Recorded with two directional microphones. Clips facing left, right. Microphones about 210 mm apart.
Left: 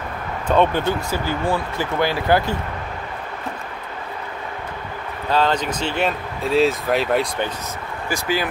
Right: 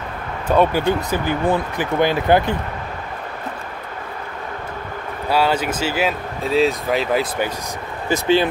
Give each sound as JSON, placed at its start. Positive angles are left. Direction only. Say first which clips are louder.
{"t": 0.5, "sound": "speech", "louder": "right 2 dB", "side_deg": -10}
{"t": 5.3, "sound": "speech", "louder": "right 1 dB", "side_deg": -10}
{"t": 8.1, "sound": "speech", "louder": "right 7 dB", "side_deg": -25}